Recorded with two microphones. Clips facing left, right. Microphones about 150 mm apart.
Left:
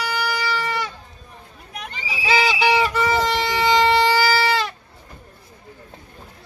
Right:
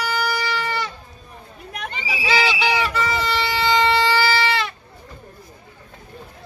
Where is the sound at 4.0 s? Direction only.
15° left (ahead or behind).